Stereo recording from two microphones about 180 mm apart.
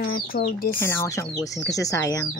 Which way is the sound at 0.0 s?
55° left (ahead or behind).